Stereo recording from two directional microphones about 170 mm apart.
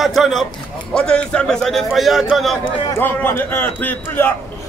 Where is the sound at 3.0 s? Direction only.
10° left (ahead or behind).